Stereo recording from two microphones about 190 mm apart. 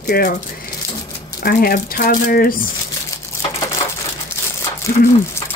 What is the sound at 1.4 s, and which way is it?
Speech, 50° left (ahead or behind).